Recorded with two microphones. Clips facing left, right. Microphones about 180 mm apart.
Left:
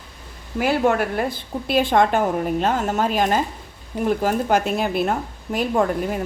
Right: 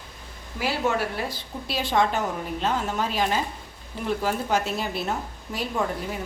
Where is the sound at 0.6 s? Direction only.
55° left (ahead or behind).